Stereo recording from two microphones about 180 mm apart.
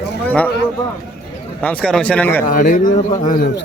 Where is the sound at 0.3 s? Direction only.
10° left (ahead or behind).